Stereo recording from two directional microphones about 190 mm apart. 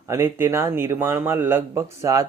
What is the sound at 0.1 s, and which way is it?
Speech, 15° right (ahead or behind).